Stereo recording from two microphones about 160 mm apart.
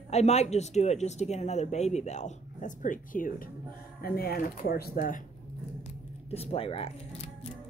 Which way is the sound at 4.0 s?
70° left (ahead or behind).